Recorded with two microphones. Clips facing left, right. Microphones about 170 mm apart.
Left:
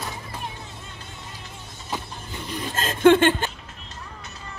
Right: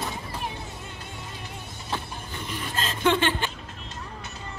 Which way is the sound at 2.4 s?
45° left (ahead or behind).